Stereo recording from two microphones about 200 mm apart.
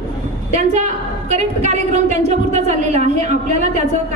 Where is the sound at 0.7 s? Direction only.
35° right (ahead or behind).